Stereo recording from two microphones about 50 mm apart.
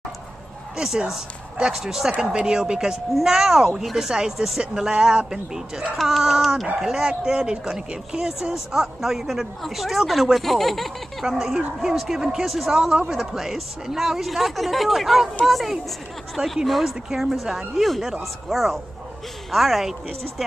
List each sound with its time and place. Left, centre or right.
0.7 s speech: centre
11.2 s speech: centre